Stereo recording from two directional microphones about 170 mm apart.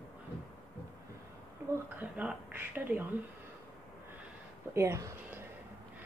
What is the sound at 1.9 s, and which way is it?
Speech, 10° right (ahead or behind).